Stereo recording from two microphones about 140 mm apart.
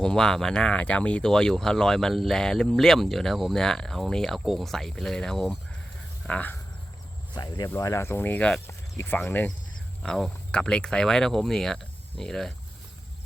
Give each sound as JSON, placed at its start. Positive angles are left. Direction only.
{"t": 0.0, "sound": "speech", "side_deg": 5}
{"t": 7.3, "sound": "speech", "side_deg": 30}